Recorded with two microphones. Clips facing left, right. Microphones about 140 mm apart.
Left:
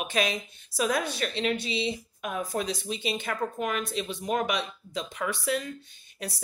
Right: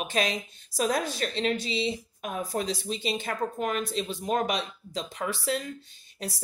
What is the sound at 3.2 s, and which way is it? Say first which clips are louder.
Speech: even; 40° right (ahead or behind).